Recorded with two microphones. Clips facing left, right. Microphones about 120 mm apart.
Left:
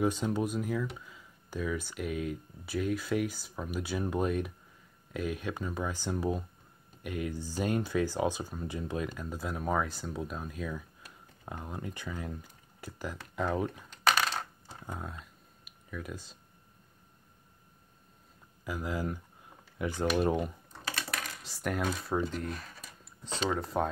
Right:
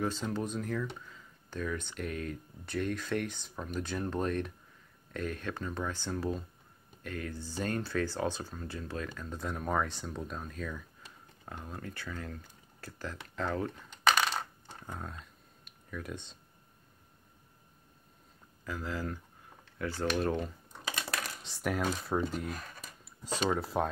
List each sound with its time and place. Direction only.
0.0 s speech: 15° left (ahead or behind)
14.0 s coin: centre (ahead or behind)
14.8 s computer keyboard: 10° left (ahead or behind)
18.6 s speech: 15° left (ahead or behind)
21.4 s speech: centre (ahead or behind)